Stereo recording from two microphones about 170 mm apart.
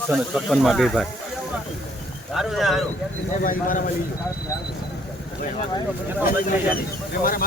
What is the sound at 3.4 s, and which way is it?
Speech, 55° left (ahead or behind).